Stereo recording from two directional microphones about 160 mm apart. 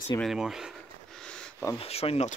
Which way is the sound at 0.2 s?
Centre (ahead or behind).